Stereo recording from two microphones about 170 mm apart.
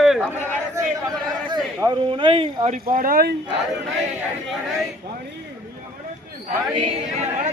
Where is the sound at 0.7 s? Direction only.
20° right (ahead or behind); by 2.8 s 35° right (ahead or behind).